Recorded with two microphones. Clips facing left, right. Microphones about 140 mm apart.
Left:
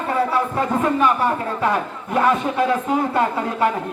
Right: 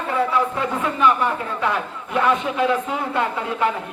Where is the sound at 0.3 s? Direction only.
40° left (ahead or behind).